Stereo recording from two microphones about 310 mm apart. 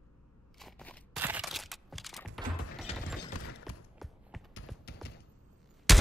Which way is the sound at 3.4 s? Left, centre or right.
Left.